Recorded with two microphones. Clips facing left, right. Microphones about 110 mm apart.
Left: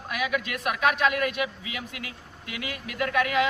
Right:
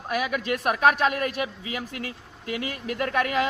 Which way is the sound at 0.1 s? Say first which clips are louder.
Right 3 dB; 40° right (ahead or behind).